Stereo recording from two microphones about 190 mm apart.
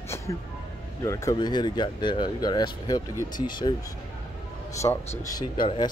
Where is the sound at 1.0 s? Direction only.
15° left (ahead or behind).